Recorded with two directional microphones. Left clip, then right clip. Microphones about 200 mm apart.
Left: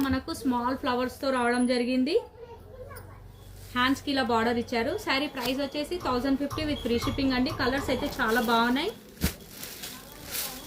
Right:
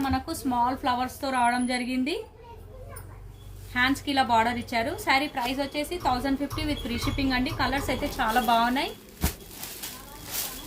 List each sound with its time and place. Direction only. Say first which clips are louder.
0.0 s a woman's voice: right 1 dB; 30° right (ahead or behind)
3.7 s a woman's voice: right 1 dB; 30° right (ahead or behind)